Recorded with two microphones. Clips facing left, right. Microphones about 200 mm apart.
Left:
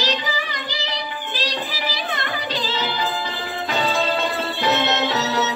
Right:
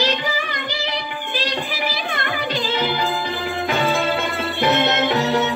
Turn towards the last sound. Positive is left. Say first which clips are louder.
# right 3 dB
turn(degrees=-50)  # may be behind; listen again after turning